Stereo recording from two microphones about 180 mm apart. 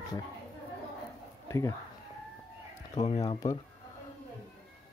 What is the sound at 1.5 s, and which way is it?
Speech, 15° left (ahead or behind).